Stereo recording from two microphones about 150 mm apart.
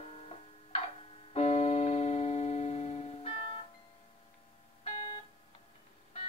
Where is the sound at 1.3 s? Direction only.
45° left (ahead or behind).